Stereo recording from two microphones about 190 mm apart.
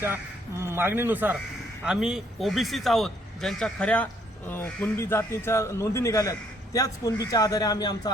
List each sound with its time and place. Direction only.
0.6 s a man's voice: 15° right (ahead or behind); by 8.1 s 20° left (ahead or behind)